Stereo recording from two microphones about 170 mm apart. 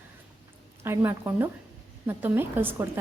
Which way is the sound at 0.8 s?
15° right (ahead or behind).